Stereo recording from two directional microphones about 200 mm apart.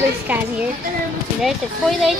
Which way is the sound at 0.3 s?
5° right (ahead or behind).